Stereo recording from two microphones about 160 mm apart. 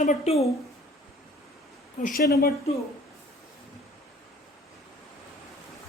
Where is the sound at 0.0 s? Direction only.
45° left (ahead or behind).